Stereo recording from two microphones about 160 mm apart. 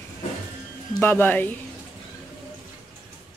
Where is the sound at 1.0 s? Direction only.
10° left (ahead or behind).